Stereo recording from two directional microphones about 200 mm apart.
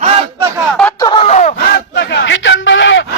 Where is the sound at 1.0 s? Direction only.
25° left (ahead or behind).